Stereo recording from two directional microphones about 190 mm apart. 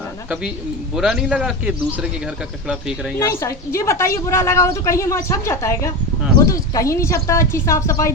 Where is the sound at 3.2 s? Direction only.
15° left (ahead or behind).